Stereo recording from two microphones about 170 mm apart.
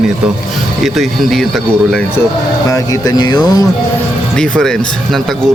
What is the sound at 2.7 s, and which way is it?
Speech, 20° left (ahead or behind).